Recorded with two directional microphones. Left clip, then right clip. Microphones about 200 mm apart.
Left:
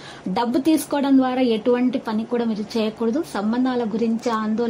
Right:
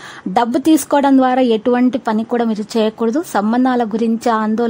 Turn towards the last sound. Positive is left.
turn(degrees=-45)  # may be behind; listen again after turning